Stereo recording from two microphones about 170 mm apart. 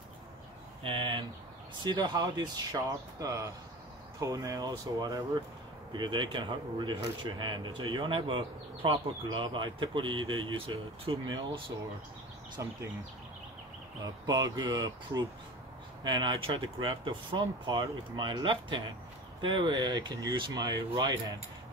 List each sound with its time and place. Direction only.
0.8 s speech: 30° right (ahead or behind)
12.6 s speech: 15° right (ahead or behind)
14.2 s speech: 20° right (ahead or behind)